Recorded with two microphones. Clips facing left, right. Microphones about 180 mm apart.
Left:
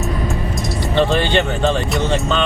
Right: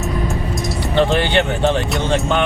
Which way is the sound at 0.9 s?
15° right (ahead or behind).